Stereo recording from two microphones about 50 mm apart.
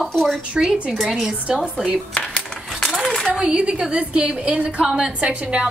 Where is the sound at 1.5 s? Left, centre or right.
Centre.